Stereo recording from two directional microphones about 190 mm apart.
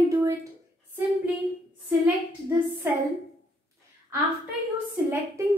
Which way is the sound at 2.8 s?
10° right (ahead or behind).